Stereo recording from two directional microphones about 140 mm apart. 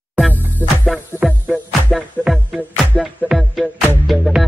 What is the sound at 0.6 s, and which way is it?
Music, 15° left (ahead or behind).